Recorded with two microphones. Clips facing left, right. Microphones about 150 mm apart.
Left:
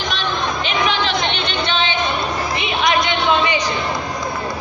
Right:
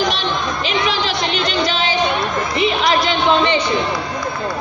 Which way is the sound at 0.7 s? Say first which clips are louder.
Right 1 dB; 35° right (ahead or behind).